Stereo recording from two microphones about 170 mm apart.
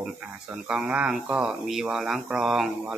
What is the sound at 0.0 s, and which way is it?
Speech, 5° right (ahead or behind).